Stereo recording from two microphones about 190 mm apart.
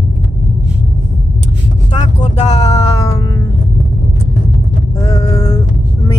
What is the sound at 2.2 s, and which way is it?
Speech, 35° left (ahead or behind).